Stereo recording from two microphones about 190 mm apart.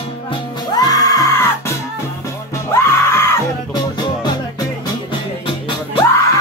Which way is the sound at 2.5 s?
15° left (ahead or behind).